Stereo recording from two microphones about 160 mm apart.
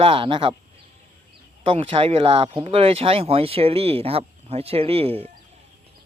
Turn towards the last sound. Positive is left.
turn(degrees=-35)  # may be behind; listen again after turning